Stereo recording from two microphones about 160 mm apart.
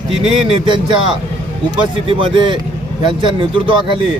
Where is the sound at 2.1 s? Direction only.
35° right (ahead or behind).